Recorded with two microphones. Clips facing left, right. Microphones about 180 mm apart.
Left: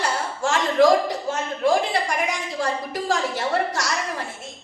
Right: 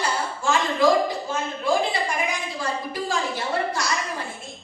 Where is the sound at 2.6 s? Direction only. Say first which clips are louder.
Left 4 dB; 75° left (ahead or behind).